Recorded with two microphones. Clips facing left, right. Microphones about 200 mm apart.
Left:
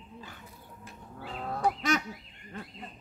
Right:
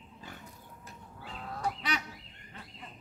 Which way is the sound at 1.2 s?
55° left (ahead or behind).